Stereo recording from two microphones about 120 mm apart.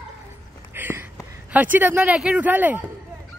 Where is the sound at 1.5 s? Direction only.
15° right (ahead or behind).